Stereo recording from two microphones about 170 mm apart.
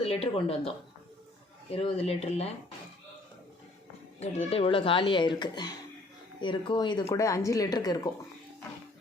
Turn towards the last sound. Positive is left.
turn(degrees=25)  # may be behind; listen again after turning